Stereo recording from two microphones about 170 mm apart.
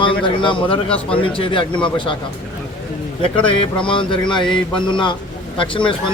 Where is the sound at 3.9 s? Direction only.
30° left (ahead or behind).